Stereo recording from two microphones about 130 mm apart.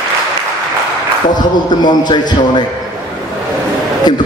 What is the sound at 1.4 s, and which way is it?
Speech, 35° left (ahead or behind).